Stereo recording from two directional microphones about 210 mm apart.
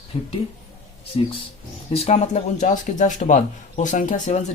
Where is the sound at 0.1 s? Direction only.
30° left (ahead or behind).